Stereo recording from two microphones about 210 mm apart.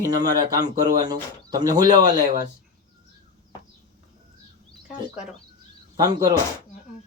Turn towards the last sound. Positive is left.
turn(degrees=-15)  # may be behind; listen again after turning